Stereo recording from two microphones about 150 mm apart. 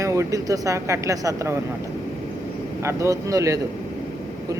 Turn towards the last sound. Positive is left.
turn(degrees=-20)  # may be behind; listen again after turning